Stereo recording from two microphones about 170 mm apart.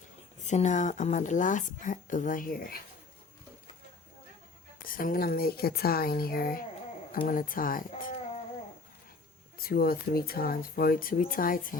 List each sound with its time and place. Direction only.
0.3 s speech: 45° left (ahead or behind)
4.9 s speech: 55° left (ahead or behind)
9.6 s speech: 60° left (ahead or behind)